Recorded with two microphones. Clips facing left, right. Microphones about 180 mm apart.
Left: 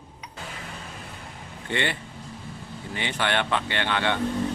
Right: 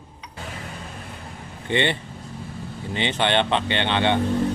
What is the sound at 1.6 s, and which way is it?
Speech, 20° right (ahead or behind).